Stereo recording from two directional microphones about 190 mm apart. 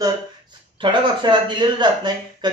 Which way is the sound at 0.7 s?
25° right (ahead or behind).